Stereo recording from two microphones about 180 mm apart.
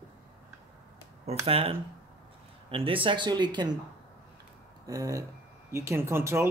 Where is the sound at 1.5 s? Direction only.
30° right (ahead or behind).